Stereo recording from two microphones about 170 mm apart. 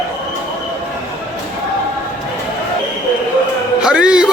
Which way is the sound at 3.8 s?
5° right (ahead or behind).